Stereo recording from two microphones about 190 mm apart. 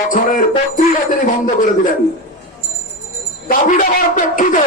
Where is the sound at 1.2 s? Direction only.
45° left (ahead or behind).